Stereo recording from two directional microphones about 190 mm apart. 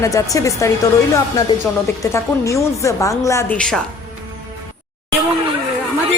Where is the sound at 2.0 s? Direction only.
15° left (ahead or behind).